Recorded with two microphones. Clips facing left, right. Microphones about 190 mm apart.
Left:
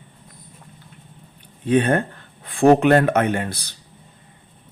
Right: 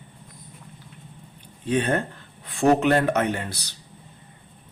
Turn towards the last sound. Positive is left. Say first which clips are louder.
# left 4 dB
turn(degrees=55)  # may be behind; listen again after turning